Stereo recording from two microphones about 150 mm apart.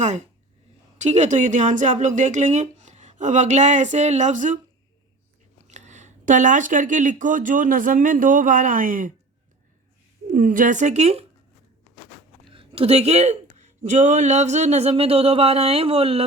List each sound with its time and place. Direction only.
0.9 s speech: 50° right (ahead or behind)
5.6 s speech: 50° right (ahead or behind)
10.3 s speech: 65° right (ahead or behind); by 11.3 s 45° right (ahead or behind)
12.5 s a woman's voice: 40° right (ahead or behind)
13.8 s a sound: 55° right (ahead or behind)